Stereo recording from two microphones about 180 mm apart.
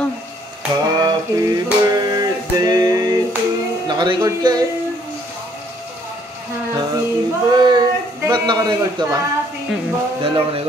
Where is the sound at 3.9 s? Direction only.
25° right (ahead or behind).